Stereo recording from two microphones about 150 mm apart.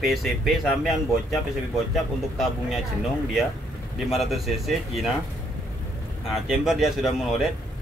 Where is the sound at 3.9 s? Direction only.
Centre (ahead or behind).